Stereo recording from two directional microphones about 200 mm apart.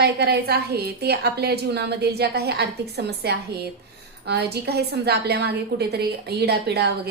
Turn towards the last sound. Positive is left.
turn(degrees=-55)  # may be behind; listen again after turning